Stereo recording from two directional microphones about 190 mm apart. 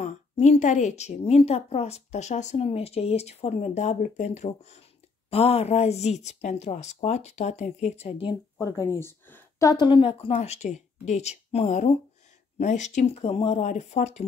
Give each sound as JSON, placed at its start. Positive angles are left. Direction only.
{"t": 0.0, "sound": "speech", "side_deg": 40}